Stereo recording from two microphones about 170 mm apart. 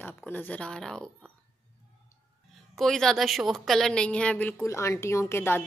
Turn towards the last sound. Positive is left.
turn(degrees=15)  # may be behind; listen again after turning